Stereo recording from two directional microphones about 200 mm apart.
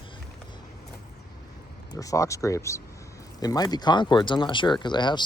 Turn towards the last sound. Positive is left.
turn(degrees=20)  # may be behind; listen again after turning